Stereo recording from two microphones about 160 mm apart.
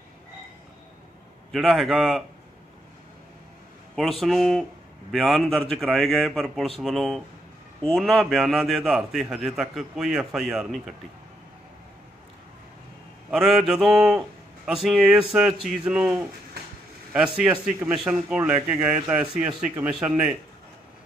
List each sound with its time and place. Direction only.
1.5 s a man's voice: centre (ahead or behind)
3.9 s a man's voice: centre (ahead or behind)
13.3 s a man's voice: 5° right (ahead or behind)